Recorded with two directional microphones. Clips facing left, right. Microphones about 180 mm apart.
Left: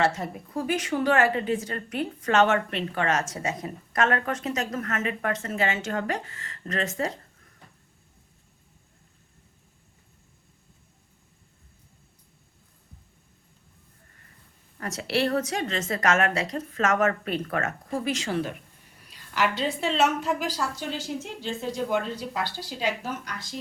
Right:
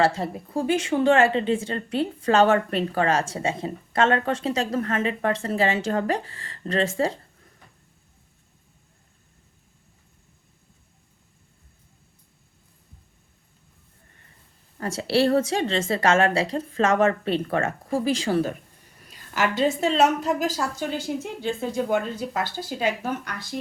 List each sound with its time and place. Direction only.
0.0 s speech: 30° right (ahead or behind)
14.8 s speech: 30° right (ahead or behind); by 23.6 s 60° right (ahead or behind)